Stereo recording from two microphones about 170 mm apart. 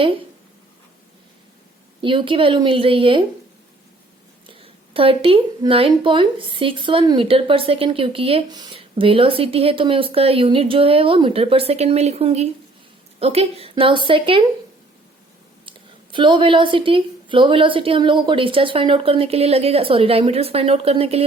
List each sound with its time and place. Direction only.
2.0 s a woman's voice: 30° right (ahead or behind)
4.4 s a woman's voice: 35° right (ahead or behind)
16.1 s a woman's voice: 30° right (ahead or behind)